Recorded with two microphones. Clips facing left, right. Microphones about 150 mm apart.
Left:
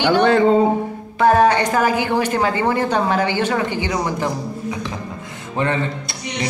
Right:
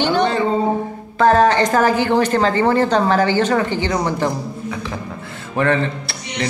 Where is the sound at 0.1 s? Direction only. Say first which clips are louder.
Left 3 dB; 60° left (ahead or behind).